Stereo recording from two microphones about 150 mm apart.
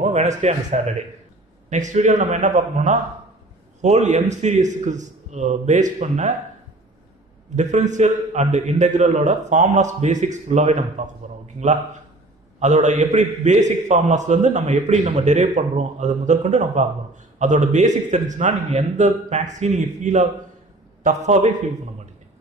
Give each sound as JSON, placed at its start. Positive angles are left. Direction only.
{"t": 0.0, "sound": "a man's voice", "side_deg": -50}
{"t": 7.5, "sound": "a man's voice", "side_deg": -50}